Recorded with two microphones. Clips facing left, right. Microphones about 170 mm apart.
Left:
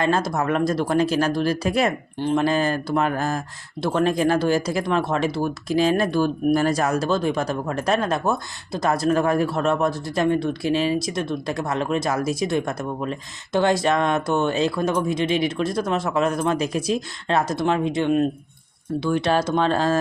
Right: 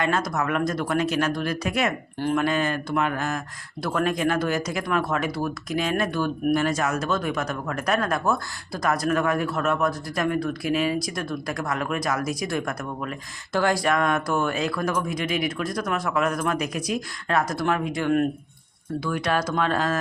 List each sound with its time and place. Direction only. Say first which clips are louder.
0.0 s speech: left 3 dB; 30° left (ahead or behind)
2.1 s speech: left 2 dB; 20° left (ahead or behind)
2.4 s speech: left 3 dB; 35° left (ahead or behind)